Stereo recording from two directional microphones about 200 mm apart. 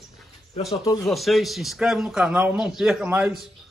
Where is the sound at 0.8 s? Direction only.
15° left (ahead or behind).